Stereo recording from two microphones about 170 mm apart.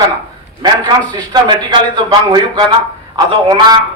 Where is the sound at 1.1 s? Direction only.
25° right (ahead or behind).